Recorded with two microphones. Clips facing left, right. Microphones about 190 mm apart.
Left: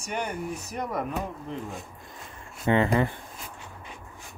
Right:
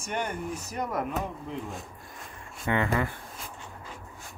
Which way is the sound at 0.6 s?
Centre (ahead or behind).